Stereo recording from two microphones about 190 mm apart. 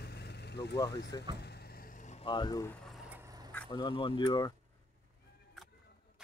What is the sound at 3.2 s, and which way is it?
Vehicle, 20° right (ahead or behind).